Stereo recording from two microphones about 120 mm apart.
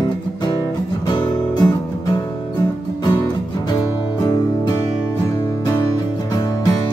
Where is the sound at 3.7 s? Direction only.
35° left (ahead or behind).